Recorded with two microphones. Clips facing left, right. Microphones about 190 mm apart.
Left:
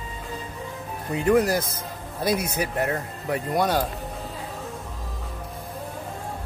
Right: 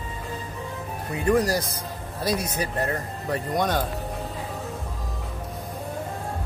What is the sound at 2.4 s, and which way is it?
Speech, 10° left (ahead or behind).